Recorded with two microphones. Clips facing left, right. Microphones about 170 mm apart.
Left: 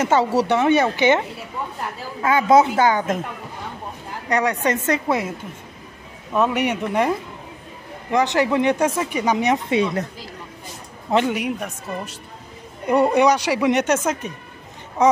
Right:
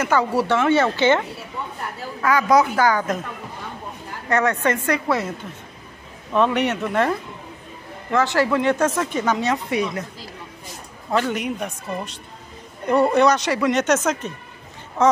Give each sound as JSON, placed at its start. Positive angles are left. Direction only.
{"t": 0.0, "sound": "speech", "side_deg": 25}
{"t": 2.2, "sound": "speech", "side_deg": 25}
{"t": 4.3, "sound": "speech", "side_deg": 15}
{"t": 6.3, "sound": "speech", "side_deg": 10}
{"t": 11.1, "sound": "a man's voice", "side_deg": 20}
{"t": 11.3, "sound": "speech", "side_deg": 5}